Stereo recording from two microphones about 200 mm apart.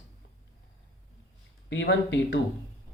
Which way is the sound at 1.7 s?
65° left (ahead or behind).